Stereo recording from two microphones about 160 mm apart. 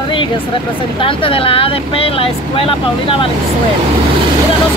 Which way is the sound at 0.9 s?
35° left (ahead or behind).